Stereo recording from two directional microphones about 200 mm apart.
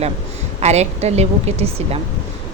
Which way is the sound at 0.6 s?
35° right (ahead or behind).